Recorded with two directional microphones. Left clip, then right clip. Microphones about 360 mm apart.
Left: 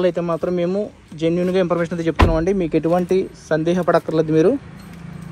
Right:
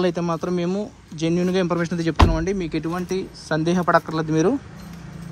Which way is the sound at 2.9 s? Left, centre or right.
Centre.